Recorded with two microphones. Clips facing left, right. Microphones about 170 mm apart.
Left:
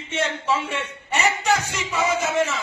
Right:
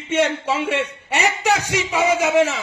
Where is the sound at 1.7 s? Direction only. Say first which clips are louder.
Right 5 dB; 75° right (ahead or behind).